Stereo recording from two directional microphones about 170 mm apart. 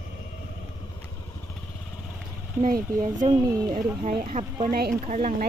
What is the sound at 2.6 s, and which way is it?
Speech, 50° right (ahead or behind).